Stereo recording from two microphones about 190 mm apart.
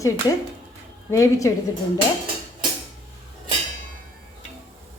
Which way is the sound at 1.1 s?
15° left (ahead or behind).